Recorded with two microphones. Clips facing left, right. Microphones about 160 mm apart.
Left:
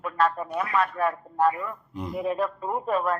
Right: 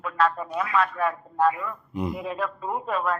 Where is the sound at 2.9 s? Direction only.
40° left (ahead or behind).